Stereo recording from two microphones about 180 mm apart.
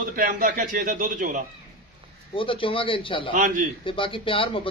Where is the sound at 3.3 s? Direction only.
45° right (ahead or behind).